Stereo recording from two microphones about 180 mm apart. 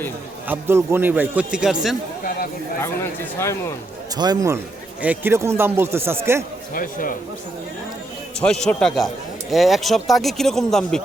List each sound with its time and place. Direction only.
0.4 s a man's voice: 10° right (ahead or behind)
2.8 s speech: 15° left (ahead or behind)
4.2 s a man's voice: 20° right (ahead or behind)
6.7 s a man's voice: 50° left (ahead or behind)
8.6 s speech: centre (ahead or behind)